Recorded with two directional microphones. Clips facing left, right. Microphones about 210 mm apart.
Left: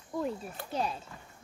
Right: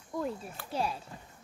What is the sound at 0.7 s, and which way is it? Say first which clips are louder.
Speech: even; 5° right (ahead or behind).